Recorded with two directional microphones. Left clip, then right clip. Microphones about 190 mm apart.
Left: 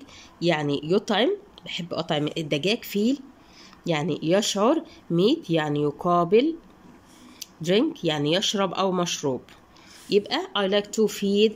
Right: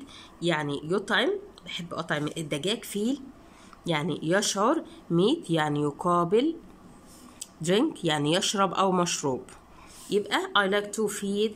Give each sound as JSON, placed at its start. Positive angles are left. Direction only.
{"t": 0.4, "sound": "speech", "side_deg": 10}
{"t": 7.6, "sound": "speech", "side_deg": 0}